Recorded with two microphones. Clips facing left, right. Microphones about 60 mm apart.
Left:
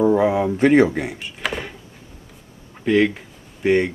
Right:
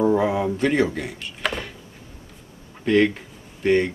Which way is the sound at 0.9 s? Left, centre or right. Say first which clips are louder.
Left 4 dB; centre.